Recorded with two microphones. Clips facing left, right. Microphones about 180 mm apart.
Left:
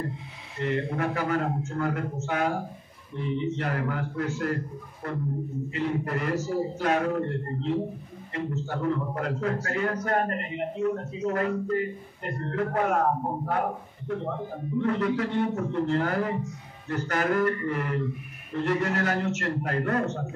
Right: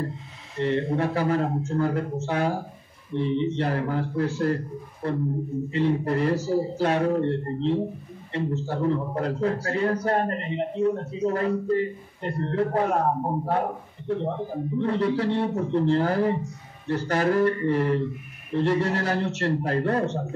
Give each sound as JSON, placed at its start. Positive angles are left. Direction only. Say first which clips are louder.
{"t": 0.6, "sound": "a man's voice", "louder": "right 4 dB", "side_deg": -30}